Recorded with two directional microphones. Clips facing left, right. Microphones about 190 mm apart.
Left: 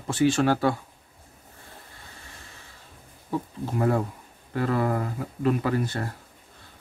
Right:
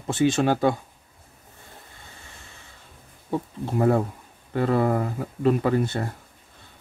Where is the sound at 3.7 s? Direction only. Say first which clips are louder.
Right 4 dB; 25° right (ahead or behind).